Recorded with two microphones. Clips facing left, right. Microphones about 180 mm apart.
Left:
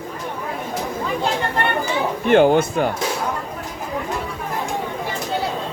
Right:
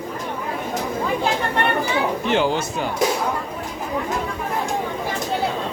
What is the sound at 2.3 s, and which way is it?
Speech, 55° left (ahead or behind).